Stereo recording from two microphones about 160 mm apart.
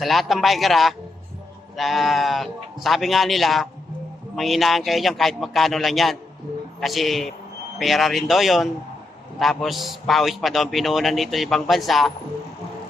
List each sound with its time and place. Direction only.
0.0 s a man's voice: centre (ahead or behind)